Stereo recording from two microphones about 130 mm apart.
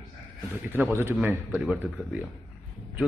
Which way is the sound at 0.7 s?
15° right (ahead or behind).